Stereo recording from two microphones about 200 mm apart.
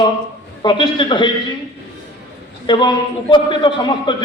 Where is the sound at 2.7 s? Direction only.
25° left (ahead or behind).